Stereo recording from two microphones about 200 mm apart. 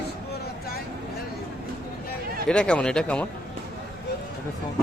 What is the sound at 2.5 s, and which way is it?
Speech, 5° left (ahead or behind).